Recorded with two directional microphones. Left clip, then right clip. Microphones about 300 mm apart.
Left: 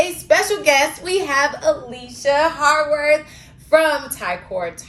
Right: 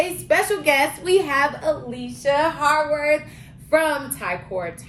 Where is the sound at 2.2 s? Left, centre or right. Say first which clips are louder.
Left 3 dB; centre.